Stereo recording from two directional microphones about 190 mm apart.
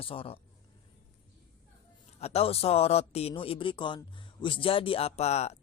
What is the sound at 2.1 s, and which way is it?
Speech, 35° left (ahead or behind).